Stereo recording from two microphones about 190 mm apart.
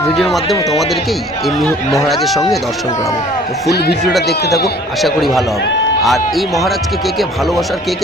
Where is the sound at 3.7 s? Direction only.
60° left (ahead or behind).